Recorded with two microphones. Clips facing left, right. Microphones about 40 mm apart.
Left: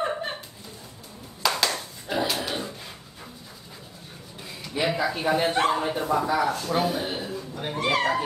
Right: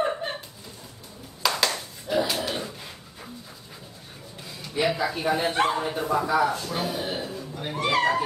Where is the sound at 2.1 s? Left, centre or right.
Centre.